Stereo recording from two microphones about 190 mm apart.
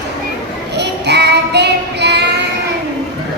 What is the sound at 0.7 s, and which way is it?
Child singing, 65° right (ahead or behind).